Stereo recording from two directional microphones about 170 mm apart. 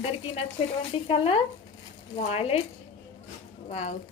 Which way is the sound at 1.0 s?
35° left (ahead or behind).